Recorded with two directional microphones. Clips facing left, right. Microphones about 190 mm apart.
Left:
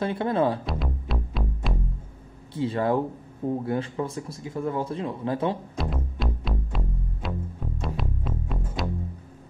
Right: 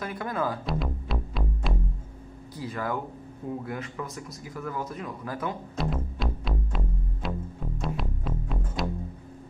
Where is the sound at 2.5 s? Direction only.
30° left (ahead or behind).